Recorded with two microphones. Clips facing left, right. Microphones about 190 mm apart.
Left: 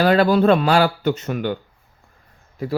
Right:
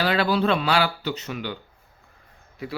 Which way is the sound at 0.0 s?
45° left (ahead or behind).